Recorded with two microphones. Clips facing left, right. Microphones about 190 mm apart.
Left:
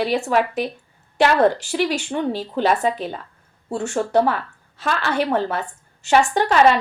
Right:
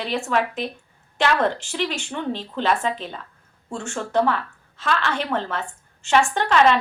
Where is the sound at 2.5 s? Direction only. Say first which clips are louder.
Left 3 dB; 40° left (ahead or behind).